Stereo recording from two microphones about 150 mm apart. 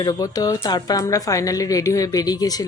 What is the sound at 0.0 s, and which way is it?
A woman's voice, 25° left (ahead or behind).